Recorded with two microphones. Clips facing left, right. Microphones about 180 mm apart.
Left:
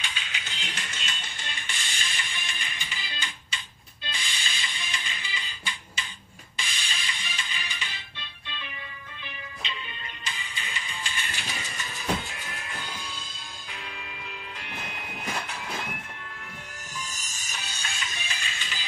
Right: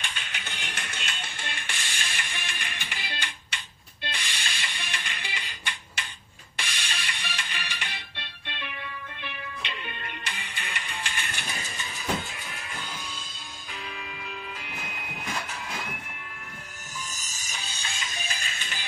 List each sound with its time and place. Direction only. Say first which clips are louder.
0.0 s music: even; 55° right (ahead or behind)
18.3 s music: even; 45° right (ahead or behind)